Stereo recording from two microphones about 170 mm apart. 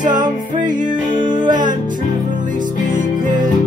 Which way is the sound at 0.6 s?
50° right (ahead or behind).